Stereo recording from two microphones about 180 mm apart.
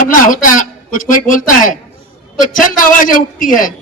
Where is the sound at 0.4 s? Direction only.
50° left (ahead or behind).